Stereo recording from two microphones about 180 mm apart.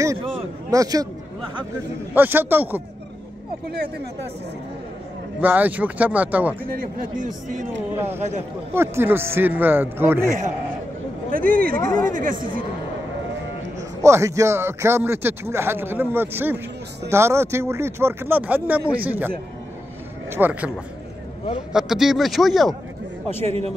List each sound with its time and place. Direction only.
0.7 s speech: 20° right (ahead or behind)
2.1 s speech: 10° right (ahead or behind)
5.4 s speech: 10° right (ahead or behind)
6.7 s speech: 50° right (ahead or behind)
8.7 s speech: 15° right (ahead or behind)
11.3 s speech: 50° right (ahead or behind)
11.8 s speech: 20° left (ahead or behind)
12.1 s speech: 50° right (ahead or behind)
14.0 s speech: 15° right (ahead or behind)
21.7 s a man's voice: 5° right (ahead or behind)